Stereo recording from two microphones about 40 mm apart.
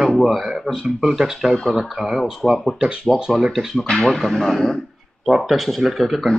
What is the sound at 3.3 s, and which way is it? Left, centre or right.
Speech, centre.